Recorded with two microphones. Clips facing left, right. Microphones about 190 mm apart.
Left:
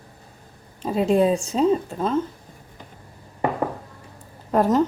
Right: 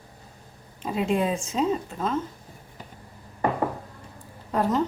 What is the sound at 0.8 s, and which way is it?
A woman's voice, 35° left (ahead or behind).